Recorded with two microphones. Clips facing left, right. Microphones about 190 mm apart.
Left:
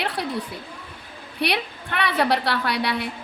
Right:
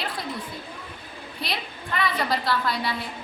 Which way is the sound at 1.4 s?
70° left (ahead or behind).